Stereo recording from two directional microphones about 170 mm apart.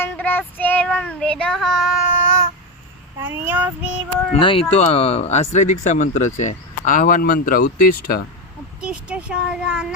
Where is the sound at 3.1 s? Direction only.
15° right (ahead or behind).